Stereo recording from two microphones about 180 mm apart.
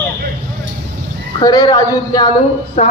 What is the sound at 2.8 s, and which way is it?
Speech, 40° left (ahead or behind).